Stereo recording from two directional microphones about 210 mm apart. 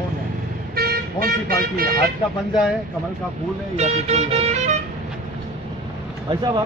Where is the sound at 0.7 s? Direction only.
45° right (ahead or behind).